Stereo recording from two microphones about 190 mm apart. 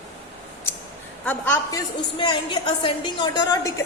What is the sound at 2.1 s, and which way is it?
A woman's voice, 25° left (ahead or behind).